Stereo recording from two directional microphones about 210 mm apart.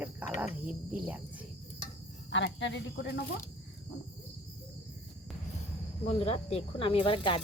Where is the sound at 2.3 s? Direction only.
60° left (ahead or behind).